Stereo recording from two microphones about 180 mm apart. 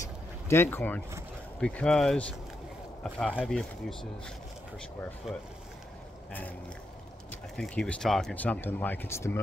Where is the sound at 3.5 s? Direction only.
5° left (ahead or behind).